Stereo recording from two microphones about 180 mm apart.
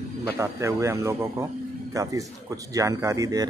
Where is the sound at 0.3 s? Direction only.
15° right (ahead or behind).